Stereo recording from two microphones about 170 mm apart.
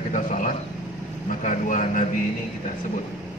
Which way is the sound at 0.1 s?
50° left (ahead or behind).